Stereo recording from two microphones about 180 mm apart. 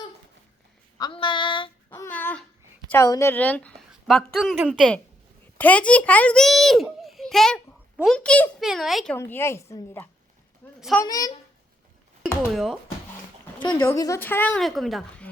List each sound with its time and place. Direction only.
0.9 s child singing: 25° left (ahead or behind)
1.9 s a sound: 10° left (ahead or behind)
2.9 s a woman's voice: 15° left (ahead or behind); by 9.1 s centre (ahead or behind)
9.1 s a woman's voice: 15° left (ahead or behind)
10.8 s a woman's voice: centre (ahead or behind)
11.0 s speech: 20° left (ahead or behind)
12.5 s speech: centre (ahead or behind)
13.7 s a woman's voice: 15° left (ahead or behind)